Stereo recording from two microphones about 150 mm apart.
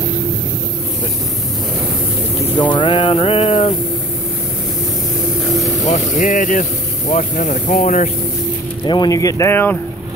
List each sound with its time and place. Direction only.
2.7 s a sound: 35° left (ahead or behind)
5.5 s vehicle: centre (ahead or behind)
5.9 s speech: 55° left (ahead or behind)
8.8 s speech: 30° left (ahead or behind)